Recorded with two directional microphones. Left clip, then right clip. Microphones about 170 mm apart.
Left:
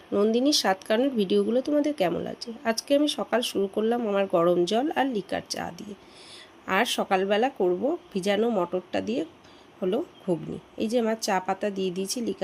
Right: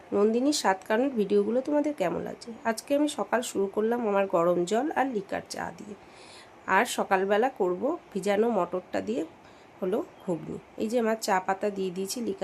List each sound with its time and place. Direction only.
0.1 s speech: 5° left (ahead or behind)
6.7 s speech: 10° left (ahead or behind)